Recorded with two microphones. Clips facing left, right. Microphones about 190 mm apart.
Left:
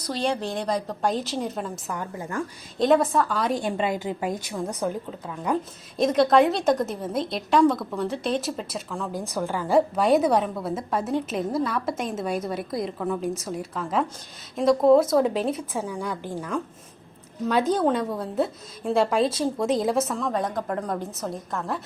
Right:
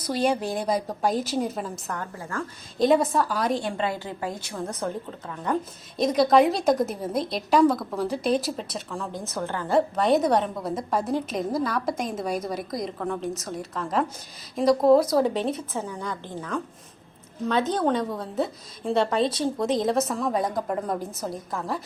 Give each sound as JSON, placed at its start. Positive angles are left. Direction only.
{"t": 0.1, "sound": "a woman's voice", "side_deg": -10}
{"t": 1.9, "sound": "a woman's voice", "side_deg": 15}
{"t": 2.8, "sound": "a woman's voice", "side_deg": 0}
{"t": 3.6, "sound": "a woman's voice", "side_deg": 20}
{"t": 17.7, "sound": "a woman's voice", "side_deg": 5}